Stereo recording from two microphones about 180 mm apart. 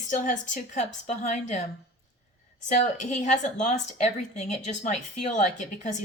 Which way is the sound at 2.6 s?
40° left (ahead or behind).